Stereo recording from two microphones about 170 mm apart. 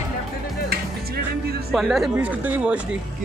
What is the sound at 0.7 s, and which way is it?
Music, 65° right (ahead or behind).